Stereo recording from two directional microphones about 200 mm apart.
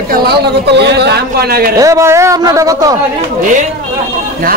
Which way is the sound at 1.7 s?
15° right (ahead or behind).